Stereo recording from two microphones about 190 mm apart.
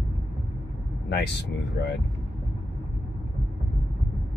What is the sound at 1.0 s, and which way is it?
Speech, 60° left (ahead or behind).